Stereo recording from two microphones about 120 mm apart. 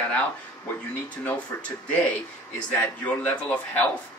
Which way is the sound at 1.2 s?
10° left (ahead or behind).